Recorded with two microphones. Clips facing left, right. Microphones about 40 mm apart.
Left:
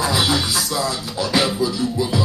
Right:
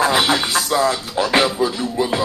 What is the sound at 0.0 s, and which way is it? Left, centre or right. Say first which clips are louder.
Music: right 3 dB; right.